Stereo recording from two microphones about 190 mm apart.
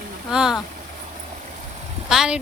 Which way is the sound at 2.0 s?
5° right (ahead or behind).